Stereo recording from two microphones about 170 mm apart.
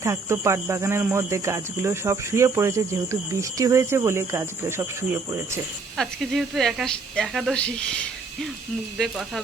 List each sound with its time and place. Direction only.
0.0 s speech: 15° right (ahead or behind)
6.0 s speech: centre (ahead or behind)